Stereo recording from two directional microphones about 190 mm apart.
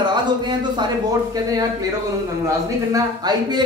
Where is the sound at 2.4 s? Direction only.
20° right (ahead or behind).